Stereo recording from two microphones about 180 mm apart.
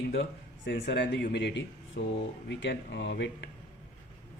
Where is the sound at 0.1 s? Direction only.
80° left.